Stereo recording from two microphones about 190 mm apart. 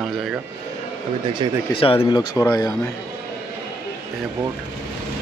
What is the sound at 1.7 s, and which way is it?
Speech, 30° left (ahead or behind).